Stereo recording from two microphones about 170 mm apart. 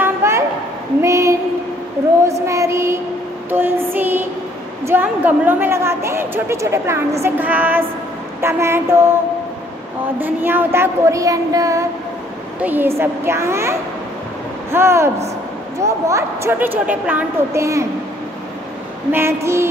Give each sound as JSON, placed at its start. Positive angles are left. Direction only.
{"t": 0.0, "sound": "a sound", "side_deg": -15}
{"t": 2.4, "sound": "a woman's voice", "side_deg": -15}
{"t": 10.1, "sound": "a woman's voice", "side_deg": -10}
{"t": 19.1, "sound": "a woman's voice", "side_deg": -15}